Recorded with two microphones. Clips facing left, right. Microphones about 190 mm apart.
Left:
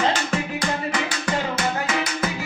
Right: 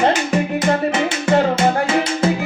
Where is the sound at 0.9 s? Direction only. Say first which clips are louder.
Right 9 dB; 25° right (ahead or behind).